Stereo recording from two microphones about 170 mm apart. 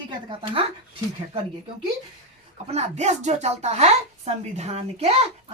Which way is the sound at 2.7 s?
40° right (ahead or behind).